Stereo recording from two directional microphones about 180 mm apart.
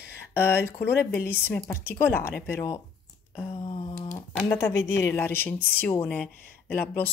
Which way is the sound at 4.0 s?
10° left (ahead or behind).